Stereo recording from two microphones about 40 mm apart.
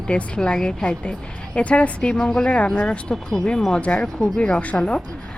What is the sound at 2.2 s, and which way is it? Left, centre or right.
Speech, centre.